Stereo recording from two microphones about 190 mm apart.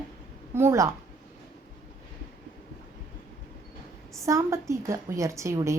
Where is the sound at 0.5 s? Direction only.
15° right (ahead or behind).